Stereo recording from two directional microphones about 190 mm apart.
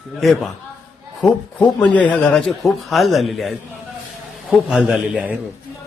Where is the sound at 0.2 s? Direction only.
Centre (ahead or behind).